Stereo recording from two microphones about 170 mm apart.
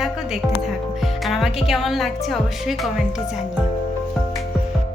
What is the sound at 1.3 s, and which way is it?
Speech, centre (ahead or behind).